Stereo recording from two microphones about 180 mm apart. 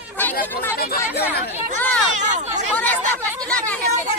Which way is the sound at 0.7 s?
60° left (ahead or behind).